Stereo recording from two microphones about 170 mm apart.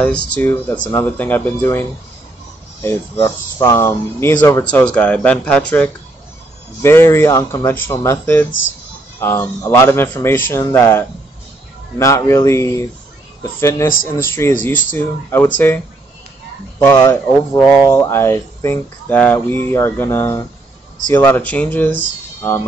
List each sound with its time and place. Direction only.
0.0 s speech: 10° left (ahead or behind)
16.8 s speech: 15° left (ahead or behind)